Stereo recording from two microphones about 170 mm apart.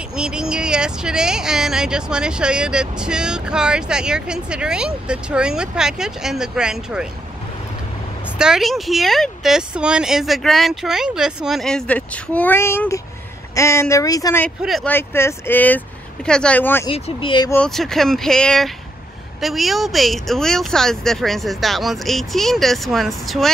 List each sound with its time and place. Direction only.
0.1 s speech: 5° right (ahead or behind)
8.4 s speech: centre (ahead or behind); by 14.4 s 20° left (ahead or behind)
14.6 s speech: centre (ahead or behind)
14.9 s speech: 15° left (ahead or behind)
16.8 s speech: 30° left (ahead or behind)
17.5 s speech: 5° left (ahead or behind)